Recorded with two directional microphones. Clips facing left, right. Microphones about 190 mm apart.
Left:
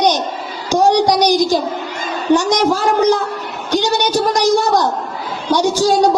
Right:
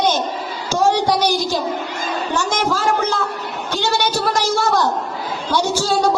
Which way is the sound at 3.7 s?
15° left (ahead or behind).